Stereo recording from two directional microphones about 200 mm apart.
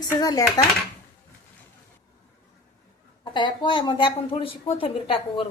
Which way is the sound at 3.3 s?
25° left (ahead or behind).